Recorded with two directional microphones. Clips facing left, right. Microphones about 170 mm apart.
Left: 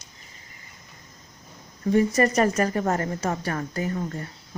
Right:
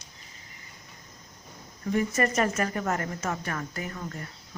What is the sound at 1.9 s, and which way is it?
Speech, 35° left (ahead or behind).